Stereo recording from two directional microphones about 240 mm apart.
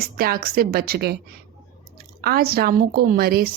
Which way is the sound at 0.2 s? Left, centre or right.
Right.